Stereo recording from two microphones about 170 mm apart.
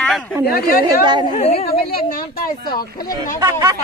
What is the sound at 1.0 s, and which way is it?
Speech, 25° right (ahead or behind).